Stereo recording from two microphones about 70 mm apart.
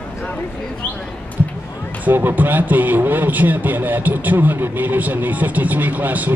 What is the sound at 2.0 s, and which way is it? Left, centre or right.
Speech, right.